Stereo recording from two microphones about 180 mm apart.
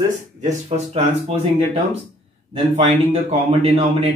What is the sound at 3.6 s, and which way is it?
Speech, 35° right (ahead or behind).